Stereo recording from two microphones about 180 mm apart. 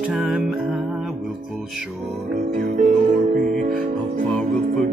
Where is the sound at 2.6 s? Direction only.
45° right (ahead or behind).